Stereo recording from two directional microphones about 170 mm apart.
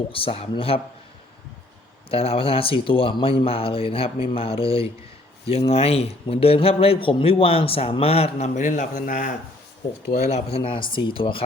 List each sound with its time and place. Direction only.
0.1 s speech: 35° left (ahead or behind)
2.0 s speech: 35° left (ahead or behind); by 9.3 s 50° left (ahead or behind)
10.2 s speech: 35° left (ahead or behind)